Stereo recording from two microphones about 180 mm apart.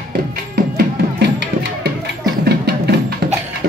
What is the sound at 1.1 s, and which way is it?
Music, 70° right (ahead or behind).